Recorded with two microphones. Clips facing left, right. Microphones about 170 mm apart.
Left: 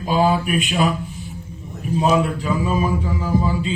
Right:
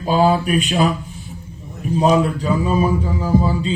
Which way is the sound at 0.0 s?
35° right (ahead or behind).